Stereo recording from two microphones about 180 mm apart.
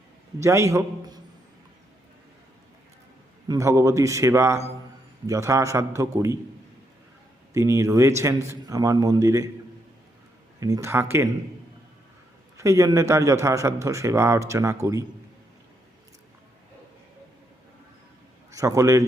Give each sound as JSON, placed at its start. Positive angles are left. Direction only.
{"t": 0.3, "sound": "speech", "side_deg": -15}
{"t": 3.5, "sound": "speech", "side_deg": -15}
{"t": 7.5, "sound": "speech", "side_deg": -15}
{"t": 10.6, "sound": "speech", "side_deg": -15}
{"t": 12.5, "sound": "speech", "side_deg": -15}
{"t": 18.5, "sound": "speech", "side_deg": -15}